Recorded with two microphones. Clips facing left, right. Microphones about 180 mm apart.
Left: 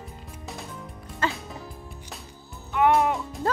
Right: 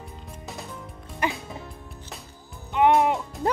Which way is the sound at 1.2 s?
15° right (ahead or behind).